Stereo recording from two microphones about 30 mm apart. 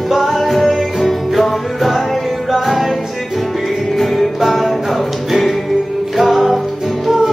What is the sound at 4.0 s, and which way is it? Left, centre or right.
Music, centre.